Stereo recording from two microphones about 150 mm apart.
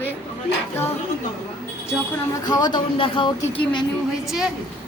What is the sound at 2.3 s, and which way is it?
Speech, 25° left (ahead or behind).